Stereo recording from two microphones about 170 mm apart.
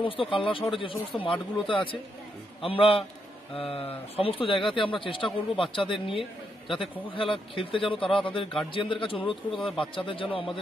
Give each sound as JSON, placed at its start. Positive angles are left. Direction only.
{"t": 0.0, "sound": "speech", "side_deg": 30}